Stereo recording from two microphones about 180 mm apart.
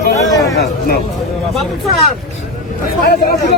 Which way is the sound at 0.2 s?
20° left (ahead or behind).